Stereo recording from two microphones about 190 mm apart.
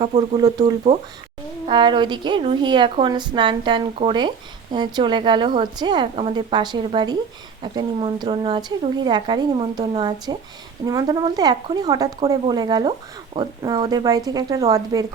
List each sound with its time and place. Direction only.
0.0 s speech: 35° right (ahead or behind)
0.3 s a woman's voice: 20° right (ahead or behind)
0.9 s a woman's voice: 35° right (ahead or behind); by 15.0 s 20° right (ahead or behind)